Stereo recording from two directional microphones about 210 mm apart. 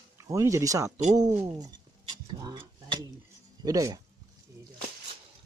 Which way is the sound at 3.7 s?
15° right (ahead or behind).